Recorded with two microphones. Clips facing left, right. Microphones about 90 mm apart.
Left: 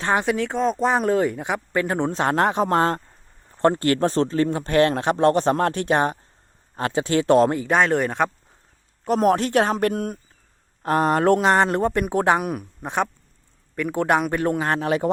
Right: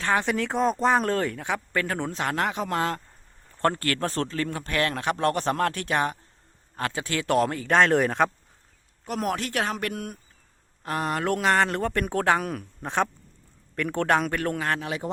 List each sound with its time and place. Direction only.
0.0 s speech: 20° left (ahead or behind)
0.3 s speech: centre (ahead or behind); by 3.0 s 35° left (ahead or behind)
3.6 s speech: 20° left (ahead or behind)
7.7 s speech: centre (ahead or behind)
9.0 s speech: 35° left (ahead or behind)
11.3 s speech: 25° left (ahead or behind)
14.8 s a man's voice: 50° left (ahead or behind)